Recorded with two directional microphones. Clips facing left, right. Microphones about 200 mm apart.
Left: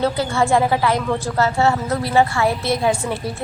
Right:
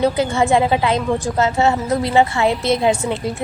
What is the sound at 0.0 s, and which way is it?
A woman's voice, 20° right (ahead or behind).